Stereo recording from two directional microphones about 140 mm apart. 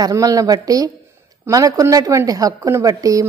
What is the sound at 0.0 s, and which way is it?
A woman's voice, 25° right (ahead or behind).